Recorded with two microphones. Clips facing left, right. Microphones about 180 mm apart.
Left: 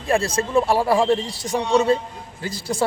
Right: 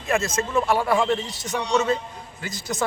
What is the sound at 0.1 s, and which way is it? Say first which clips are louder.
Speech: left 4 dB; 30° left (ahead or behind).